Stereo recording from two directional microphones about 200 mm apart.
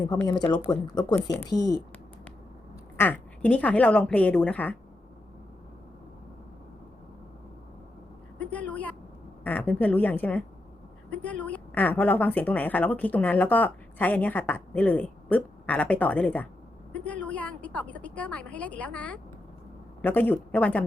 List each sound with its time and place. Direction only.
0.2 s a woman's voice: 20° left (ahead or behind)
3.0 s a woman's voice: 10° left (ahead or behind)
8.4 s a woman's voice: 5° left (ahead or behind)